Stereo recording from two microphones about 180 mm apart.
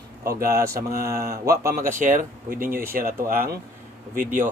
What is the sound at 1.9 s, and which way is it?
Speech, 45° right (ahead or behind).